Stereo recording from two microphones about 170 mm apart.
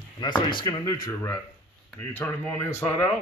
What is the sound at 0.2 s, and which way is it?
Speech, 30° left (ahead or behind).